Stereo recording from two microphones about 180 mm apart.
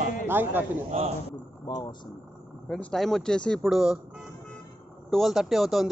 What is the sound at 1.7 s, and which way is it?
Speech, 20° left (ahead or behind).